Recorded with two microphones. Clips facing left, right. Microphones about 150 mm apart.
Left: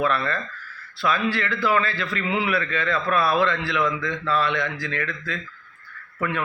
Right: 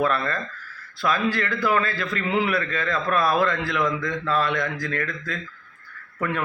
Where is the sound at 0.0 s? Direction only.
40° right (ahead or behind).